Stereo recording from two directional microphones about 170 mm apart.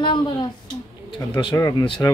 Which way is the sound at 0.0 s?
30° left (ahead or behind).